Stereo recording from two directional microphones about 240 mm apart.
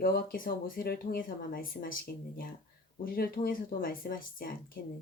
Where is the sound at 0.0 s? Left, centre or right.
Left.